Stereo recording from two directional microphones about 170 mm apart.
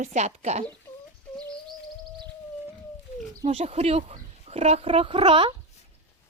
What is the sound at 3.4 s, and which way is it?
Speech, 35° right (ahead or behind).